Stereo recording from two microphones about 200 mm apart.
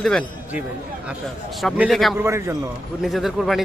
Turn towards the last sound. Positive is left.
turn(degrees=0)  # may be behind; listen again after turning